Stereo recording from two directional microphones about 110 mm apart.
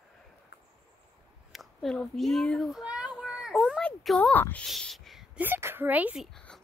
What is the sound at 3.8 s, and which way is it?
Speech, 10° left (ahead or behind).